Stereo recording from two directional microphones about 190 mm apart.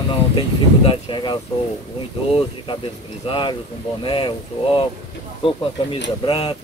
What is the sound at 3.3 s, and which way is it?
Speech, 25° left (ahead or behind).